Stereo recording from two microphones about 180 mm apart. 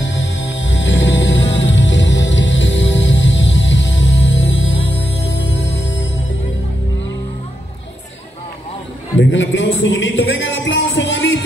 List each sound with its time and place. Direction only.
0.0 s music: 90° left
9.2 s music: 90° left